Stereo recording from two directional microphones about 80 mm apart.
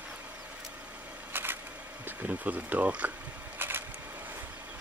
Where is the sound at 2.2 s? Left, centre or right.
Centre.